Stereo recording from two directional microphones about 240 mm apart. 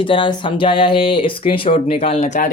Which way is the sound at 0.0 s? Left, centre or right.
Left.